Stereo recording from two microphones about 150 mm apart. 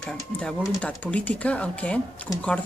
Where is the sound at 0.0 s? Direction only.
5° left (ahead or behind).